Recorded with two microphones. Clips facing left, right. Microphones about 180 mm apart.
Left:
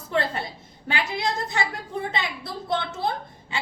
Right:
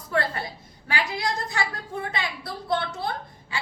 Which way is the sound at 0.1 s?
25° left (ahead or behind).